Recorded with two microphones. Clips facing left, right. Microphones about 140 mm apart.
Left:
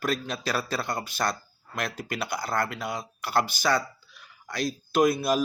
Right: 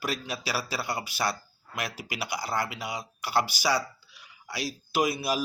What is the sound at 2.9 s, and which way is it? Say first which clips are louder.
Speech: left 1 dB; 50° left (ahead or behind).